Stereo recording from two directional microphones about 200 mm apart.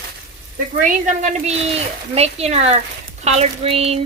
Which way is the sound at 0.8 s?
40° right (ahead or behind).